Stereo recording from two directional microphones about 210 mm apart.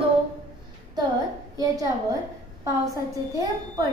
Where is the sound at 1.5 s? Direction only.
15° right (ahead or behind).